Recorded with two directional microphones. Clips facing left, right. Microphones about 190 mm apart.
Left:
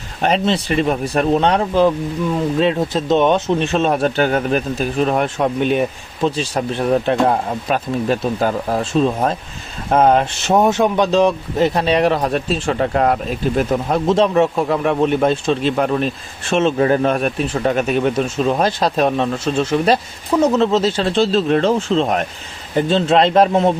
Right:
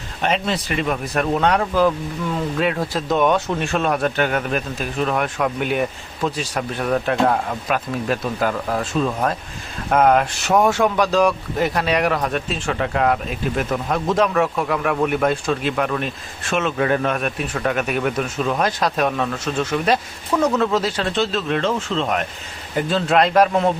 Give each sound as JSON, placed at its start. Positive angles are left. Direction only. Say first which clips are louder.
{"t": 0.2, "sound": "speech", "louder": "left 5 dB", "side_deg": 35}